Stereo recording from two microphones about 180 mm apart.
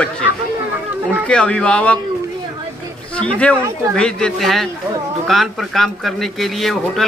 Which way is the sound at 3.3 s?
5° left (ahead or behind).